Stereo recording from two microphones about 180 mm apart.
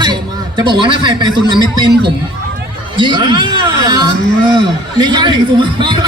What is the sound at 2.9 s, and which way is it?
A man's voice, 25° right (ahead or behind).